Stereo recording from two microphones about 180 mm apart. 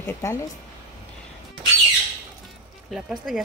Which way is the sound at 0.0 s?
15° left (ahead or behind).